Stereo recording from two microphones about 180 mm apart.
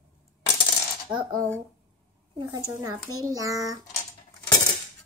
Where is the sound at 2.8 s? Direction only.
20° right (ahead or behind).